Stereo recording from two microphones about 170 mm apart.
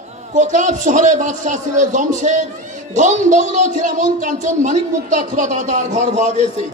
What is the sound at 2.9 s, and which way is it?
Speech, 45° right (ahead or behind).